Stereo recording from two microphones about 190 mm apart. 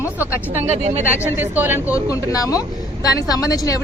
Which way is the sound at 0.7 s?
35° right (ahead or behind).